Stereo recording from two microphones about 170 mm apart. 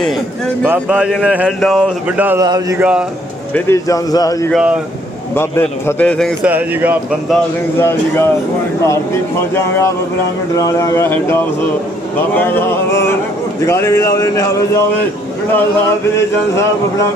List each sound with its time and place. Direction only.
0.6 s speech: 10° right (ahead or behind)
2.4 s a sound: 20° right (ahead or behind)
2.7 s speech: 5° right (ahead or behind)
3.5 s speech: 15° left (ahead or behind)
4.5 s speech: 5° right (ahead or behind)
5.3 s speech: 15° left (ahead or behind)
6.4 s speech: 10° right (ahead or behind)
7.8 s speech: 15° left (ahead or behind)
9.6 s speech: 15° left (ahead or behind)